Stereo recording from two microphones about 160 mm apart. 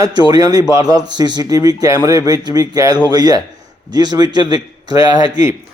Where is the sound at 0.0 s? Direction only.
25° right (ahead or behind).